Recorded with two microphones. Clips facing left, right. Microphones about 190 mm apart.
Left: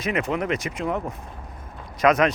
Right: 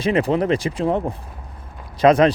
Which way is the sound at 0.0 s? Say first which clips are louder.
Right 6 dB; 30° right (ahead or behind).